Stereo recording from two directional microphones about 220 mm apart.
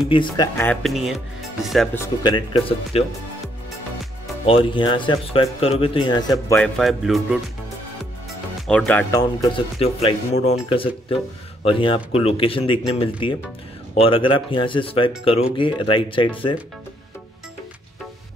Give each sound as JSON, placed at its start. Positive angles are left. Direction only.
{"t": 0.1, "sound": "speech", "side_deg": 20}
{"t": 0.6, "sound": "speech", "side_deg": 5}
{"t": 2.2, "sound": "speech", "side_deg": 20}
{"t": 4.5, "sound": "speech", "side_deg": 25}
{"t": 6.6, "sound": "speech", "side_deg": 0}
{"t": 8.6, "sound": "speech", "side_deg": 5}
{"t": 9.2, "sound": "speech", "side_deg": 20}